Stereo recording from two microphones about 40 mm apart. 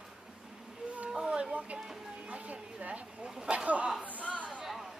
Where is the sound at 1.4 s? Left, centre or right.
Right.